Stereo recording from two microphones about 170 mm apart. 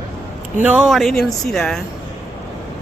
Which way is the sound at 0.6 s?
5° right (ahead or behind).